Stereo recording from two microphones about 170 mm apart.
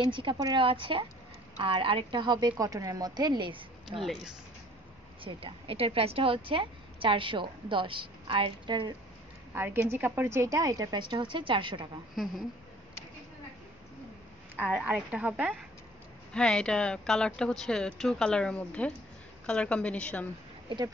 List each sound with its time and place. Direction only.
0.0 s a woman's voice: 30° right (ahead or behind)
5.2 s a woman's voice: 35° right (ahead or behind)
9.5 s a woman's voice: 15° right (ahead or behind)
14.6 s a woman's voice: 5° right (ahead or behind)
16.3 s a woman's voice: 5° left (ahead or behind)
20.6 s speech: 25° right (ahead or behind)